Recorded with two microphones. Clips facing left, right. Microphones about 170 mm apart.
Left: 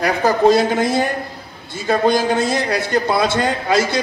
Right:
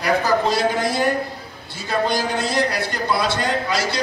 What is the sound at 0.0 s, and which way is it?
A woman's voice, 50° left (ahead or behind).